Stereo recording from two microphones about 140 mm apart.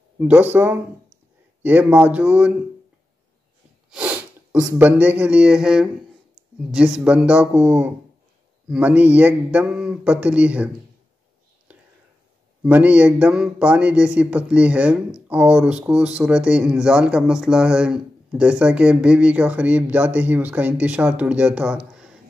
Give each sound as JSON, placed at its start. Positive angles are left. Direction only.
{"t": 0.3, "sound": "speech", "side_deg": -15}
{"t": 3.9, "sound": "sneeze", "side_deg": -10}
{"t": 4.7, "sound": "speech", "side_deg": -15}
{"t": 12.6, "sound": "speech", "side_deg": -10}